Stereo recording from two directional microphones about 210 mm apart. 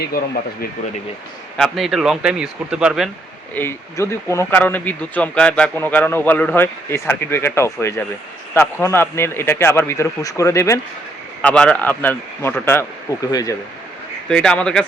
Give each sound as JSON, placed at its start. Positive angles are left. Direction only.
{"t": 0.1, "sound": "speech", "side_deg": 45}
{"t": 1.5, "sound": "speech", "side_deg": 0}
{"t": 3.5, "sound": "speech", "side_deg": 10}
{"t": 14.3, "sound": "speech", "side_deg": 5}